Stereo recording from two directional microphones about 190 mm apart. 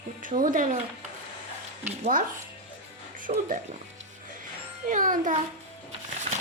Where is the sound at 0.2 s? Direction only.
45° right (ahead or behind).